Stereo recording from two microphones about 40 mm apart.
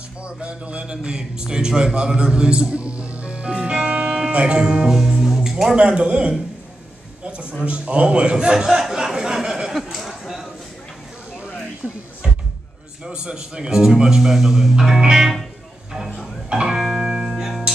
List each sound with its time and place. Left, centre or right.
0.2 s a man's voice: right; by 5.8 s centre
5.8 s a man's voice: right
8.9 s a sound: centre
11.8 s a man's voice: right
13.0 s a man's voice: right
16.4 s speech: centre
16.7 s music: centre